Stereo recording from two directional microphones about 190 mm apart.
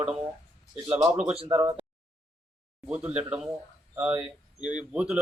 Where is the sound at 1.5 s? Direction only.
15° right (ahead or behind).